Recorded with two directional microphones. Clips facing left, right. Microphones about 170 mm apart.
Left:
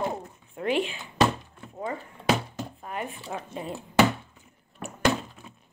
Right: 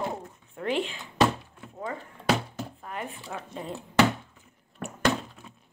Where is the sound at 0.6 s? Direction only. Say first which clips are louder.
Left 2 dB; 15° left (ahead or behind).